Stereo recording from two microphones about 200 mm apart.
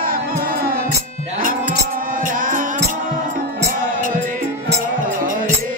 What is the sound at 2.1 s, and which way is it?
Music, 45° right (ahead or behind).